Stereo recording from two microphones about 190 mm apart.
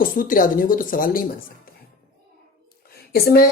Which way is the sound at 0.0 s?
45° left (ahead or behind).